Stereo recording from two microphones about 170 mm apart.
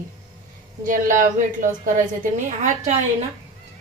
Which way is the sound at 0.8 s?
50° right (ahead or behind).